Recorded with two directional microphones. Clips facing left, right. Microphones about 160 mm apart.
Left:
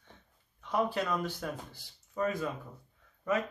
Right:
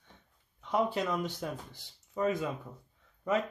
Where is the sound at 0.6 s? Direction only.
20° right (ahead or behind).